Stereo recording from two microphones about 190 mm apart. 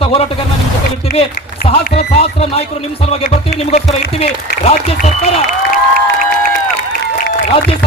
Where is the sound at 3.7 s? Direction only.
35° left (ahead or behind).